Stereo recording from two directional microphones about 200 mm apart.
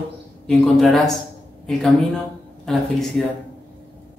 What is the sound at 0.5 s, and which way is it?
A man's voice, centre (ahead or behind).